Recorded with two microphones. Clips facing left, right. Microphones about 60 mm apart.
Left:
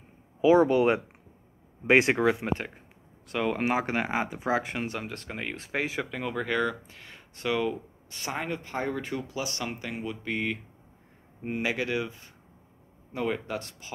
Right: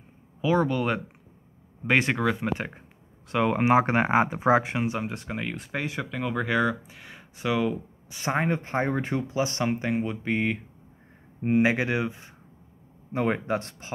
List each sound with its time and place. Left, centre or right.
0.4 s speech: centre
3.3 s speech: centre
5.4 s speech: centre
6.0 s speech: centre
8.3 s speech: right